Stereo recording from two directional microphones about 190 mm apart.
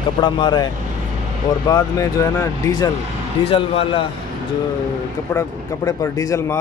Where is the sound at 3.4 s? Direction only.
30° left (ahead or behind).